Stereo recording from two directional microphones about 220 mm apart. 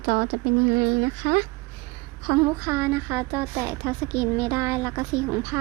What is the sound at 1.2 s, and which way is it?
Speech, 30° right (ahead or behind).